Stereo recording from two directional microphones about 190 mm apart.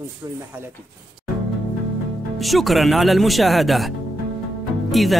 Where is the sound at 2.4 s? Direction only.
Centre (ahead or behind).